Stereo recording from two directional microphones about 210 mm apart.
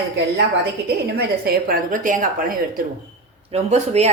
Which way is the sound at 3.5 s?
30° right (ahead or behind).